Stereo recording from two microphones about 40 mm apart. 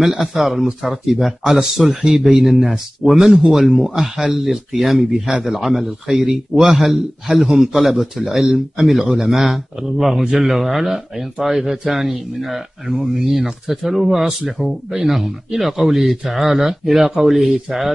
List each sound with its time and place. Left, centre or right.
0.0 s a man's voice: centre
2.1 s a man's voice: centre